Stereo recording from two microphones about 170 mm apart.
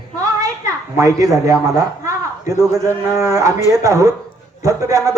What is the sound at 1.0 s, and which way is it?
Speech, 20° right (ahead or behind).